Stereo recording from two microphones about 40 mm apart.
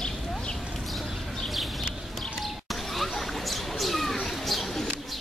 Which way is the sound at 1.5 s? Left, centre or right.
Centre.